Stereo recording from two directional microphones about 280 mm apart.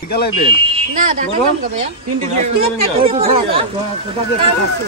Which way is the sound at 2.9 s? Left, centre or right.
Right.